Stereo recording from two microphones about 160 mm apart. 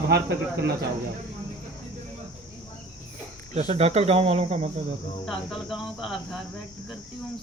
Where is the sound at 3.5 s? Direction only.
40° right (ahead or behind).